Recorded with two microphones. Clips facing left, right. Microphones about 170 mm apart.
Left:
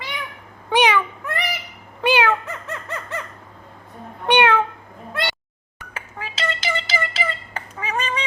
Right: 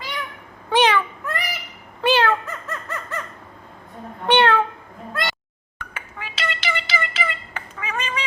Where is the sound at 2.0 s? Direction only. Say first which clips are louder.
Even; 15° left (ahead or behind).